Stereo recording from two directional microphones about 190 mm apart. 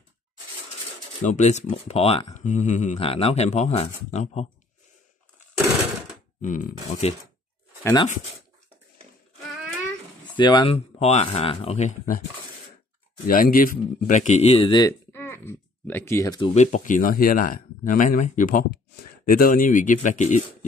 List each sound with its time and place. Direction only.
1.2 s speech: 40° left (ahead or behind)
6.4 s speech: 45° left (ahead or behind)
7.8 s speech: 20° left (ahead or behind)
10.3 s speech: 25° left (ahead or behind)
13.3 s speech: 50° left (ahead or behind); by 16.3 s 15° left (ahead or behind)
16.3 s speech: 30° left (ahead or behind)